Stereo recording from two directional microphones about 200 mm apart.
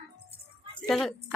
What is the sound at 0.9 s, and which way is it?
Speech, centre (ahead or behind).